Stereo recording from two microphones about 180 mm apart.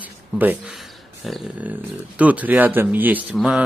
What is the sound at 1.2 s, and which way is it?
Speech, centre (ahead or behind).